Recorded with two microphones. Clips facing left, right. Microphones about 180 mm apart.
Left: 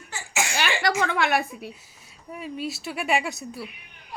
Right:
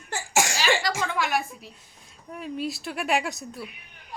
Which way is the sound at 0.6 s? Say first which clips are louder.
Left 1 dB; 65° left (ahead or behind).